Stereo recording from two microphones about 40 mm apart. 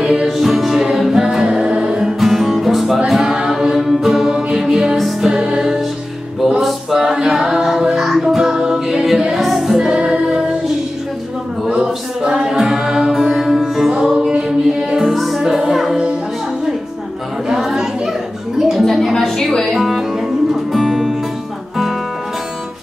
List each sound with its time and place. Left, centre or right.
0.0 s music: centre
4.3 s music: centre
5.2 s music: centre
6.9 s music: centre
9.8 s music: right
11.7 s music: centre
14.0 s a capella: centre
14.6 s music: centre
15.0 s music: centre
17.5 s chatter: centre
18.6 s a sound: centre
19.7 s music: centre